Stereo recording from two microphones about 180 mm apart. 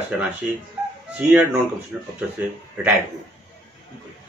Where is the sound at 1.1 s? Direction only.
5° right (ahead or behind).